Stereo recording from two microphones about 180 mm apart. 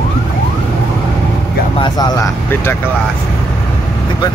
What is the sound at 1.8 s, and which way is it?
Vehicle, 20° left (ahead or behind).